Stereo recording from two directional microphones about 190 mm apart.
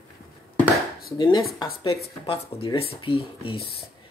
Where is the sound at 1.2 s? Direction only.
20° left (ahead or behind).